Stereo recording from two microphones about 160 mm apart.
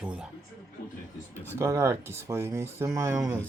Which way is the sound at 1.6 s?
20° right (ahead or behind).